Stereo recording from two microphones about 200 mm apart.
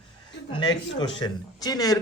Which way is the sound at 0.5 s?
20° left (ahead or behind).